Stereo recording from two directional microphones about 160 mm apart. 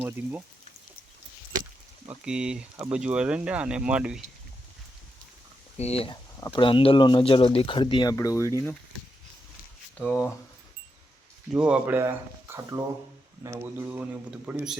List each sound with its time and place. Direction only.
0.0 s a man's voice: 10° right (ahead or behind)
2.0 s a man's voice: 5° right (ahead or behind)
5.7 s speech: 40° left (ahead or behind); by 8.7 s 15° left (ahead or behind)
10.0 s speech: 5° left (ahead or behind)
11.5 s a man's voice: 5° right (ahead or behind)